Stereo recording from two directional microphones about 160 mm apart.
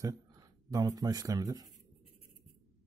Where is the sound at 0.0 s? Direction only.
20° right (ahead or behind).